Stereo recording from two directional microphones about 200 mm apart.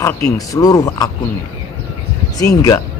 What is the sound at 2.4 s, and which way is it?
Speech, 15° left (ahead or behind).